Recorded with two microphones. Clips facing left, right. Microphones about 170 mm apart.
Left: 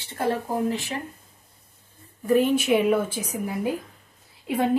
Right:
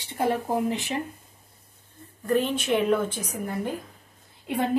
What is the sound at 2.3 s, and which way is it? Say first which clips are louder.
Speech: left 4 dB; 10° left (ahead or behind).